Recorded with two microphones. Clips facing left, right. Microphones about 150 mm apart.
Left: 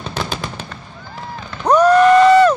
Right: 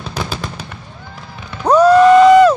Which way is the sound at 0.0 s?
5° right (ahead or behind).